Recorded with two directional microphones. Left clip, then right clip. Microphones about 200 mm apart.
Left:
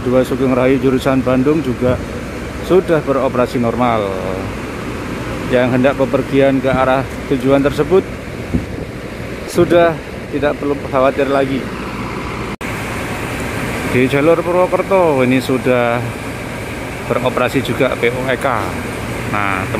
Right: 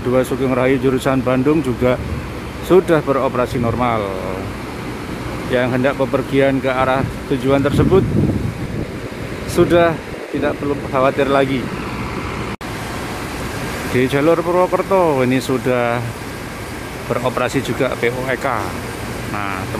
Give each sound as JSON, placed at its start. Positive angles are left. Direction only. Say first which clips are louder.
{"t": 0.1, "sound": "speech", "louder": "left 3 dB", "side_deg": -5}
{"t": 5.5, "sound": "speech", "louder": "left 4 dB", "side_deg": 0}
{"t": 9.6, "sound": "speech", "louder": "left 2 dB", "side_deg": 0}
{"t": 13.9, "sound": "speech", "louder": "left 2 dB", "side_deg": -5}
{"t": 17.1, "sound": "speech", "louder": "left 3 dB", "side_deg": -5}